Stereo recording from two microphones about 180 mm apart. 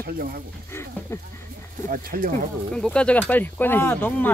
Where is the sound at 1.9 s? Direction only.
50° right (ahead or behind).